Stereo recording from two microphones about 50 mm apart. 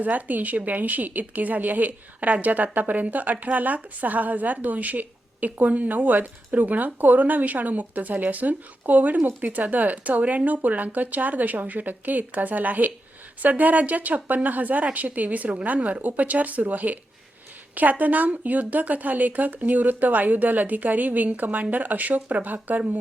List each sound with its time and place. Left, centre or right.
0.0 s a woman's voice: right